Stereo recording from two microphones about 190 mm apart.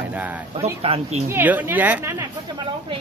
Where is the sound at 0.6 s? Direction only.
30° right (ahead or behind).